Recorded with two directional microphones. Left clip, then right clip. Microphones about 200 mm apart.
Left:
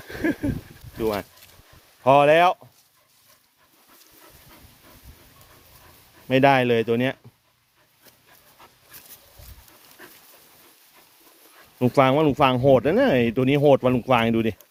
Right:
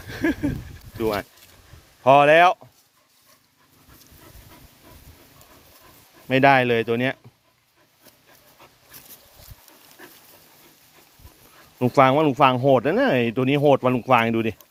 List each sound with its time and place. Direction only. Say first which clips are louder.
0.1 s a sound: right 1 dB; centre (ahead or behind)
0.9 s speech: right 1 dB; 5° left (ahead or behind)
6.2 s speech: right 1 dB; 20° left (ahead or behind)
11.9 s speech: right 2 dB; 20° left (ahead or behind)